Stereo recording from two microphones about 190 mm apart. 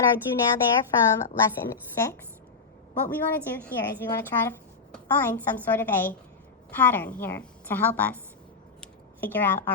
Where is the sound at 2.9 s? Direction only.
10° left (ahead or behind).